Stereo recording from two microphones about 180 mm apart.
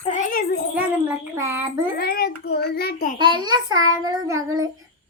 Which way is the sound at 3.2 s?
25° right (ahead or behind).